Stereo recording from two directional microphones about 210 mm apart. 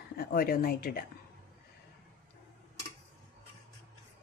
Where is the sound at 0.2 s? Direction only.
45° left (ahead or behind).